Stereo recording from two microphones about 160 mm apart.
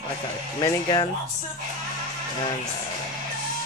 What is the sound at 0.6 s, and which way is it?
Speech, 30° left (ahead or behind).